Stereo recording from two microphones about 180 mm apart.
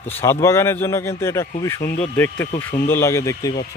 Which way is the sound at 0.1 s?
15° left (ahead or behind).